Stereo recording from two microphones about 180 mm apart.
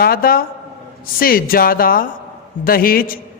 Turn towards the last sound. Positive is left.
turn(degrees=55)  # may be behind; listen again after turning